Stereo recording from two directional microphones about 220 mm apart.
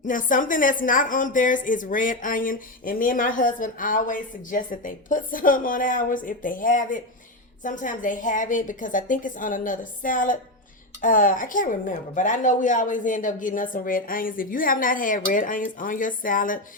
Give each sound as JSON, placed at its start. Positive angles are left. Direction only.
{"t": 0.0, "sound": "a woman's voice", "side_deg": 35}